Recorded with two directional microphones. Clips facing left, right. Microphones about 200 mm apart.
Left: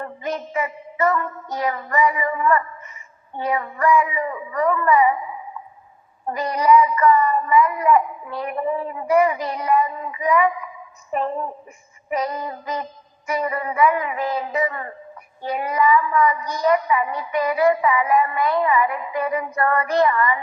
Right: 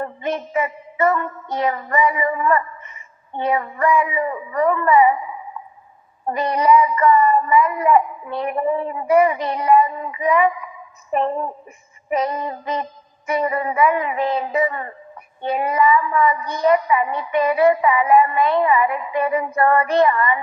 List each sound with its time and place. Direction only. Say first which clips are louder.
0.0 s child singing: right 3 dB; 25° right (ahead or behind)
6.2 s child singing: right 2 dB; 25° right (ahead or behind)
12.1 s child singing: right 3 dB; 25° right (ahead or behind)